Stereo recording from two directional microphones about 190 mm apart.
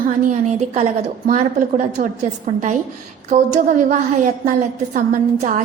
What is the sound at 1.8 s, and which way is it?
A woman's voice, 40° right (ahead or behind).